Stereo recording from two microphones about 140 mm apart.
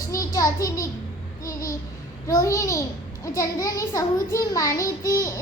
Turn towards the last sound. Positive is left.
turn(degrees=20)  # may be behind; listen again after turning